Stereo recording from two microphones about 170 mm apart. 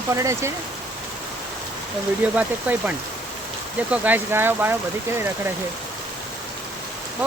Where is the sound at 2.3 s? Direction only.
10° right (ahead or behind).